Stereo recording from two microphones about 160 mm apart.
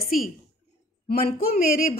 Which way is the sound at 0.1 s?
60° left (ahead or behind).